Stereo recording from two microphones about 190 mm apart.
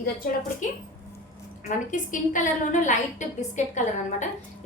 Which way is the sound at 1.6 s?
40° left (ahead or behind).